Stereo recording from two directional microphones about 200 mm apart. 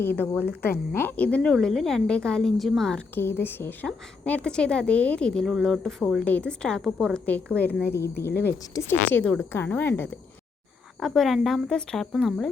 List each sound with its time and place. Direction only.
0.0 s a woman's voice: 10° left (ahead or behind)
8.3 s speech: 55° left (ahead or behind)
8.7 s a woman's voice: 10° left (ahead or behind)